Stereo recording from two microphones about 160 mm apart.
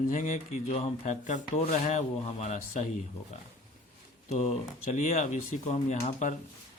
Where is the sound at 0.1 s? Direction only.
50° left (ahead or behind).